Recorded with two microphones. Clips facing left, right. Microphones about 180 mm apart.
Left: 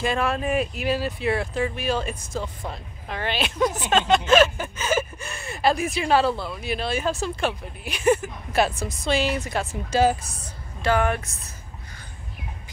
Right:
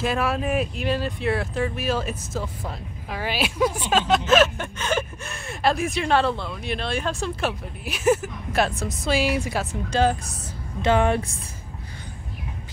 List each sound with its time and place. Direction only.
0.0 s speech: 5° right (ahead or behind)
9.8 s speech: 5° left (ahead or behind)
10.8 s speech: 25° right (ahead or behind)